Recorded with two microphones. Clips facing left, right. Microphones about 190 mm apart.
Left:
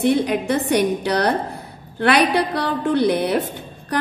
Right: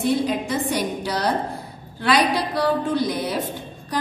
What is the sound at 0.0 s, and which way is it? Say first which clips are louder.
A woman's voice: left 3 dB; 65° left (ahead or behind).